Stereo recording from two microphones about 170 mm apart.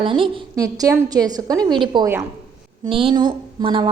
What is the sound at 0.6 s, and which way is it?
A woman's voice, 20° right (ahead or behind).